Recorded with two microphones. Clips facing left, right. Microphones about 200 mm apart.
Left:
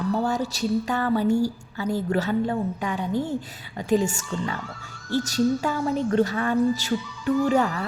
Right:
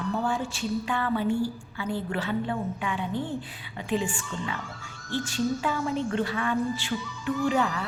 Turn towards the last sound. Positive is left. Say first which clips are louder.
# left 4 dB
turn(degrees=45)  # may be behind; listen again after turning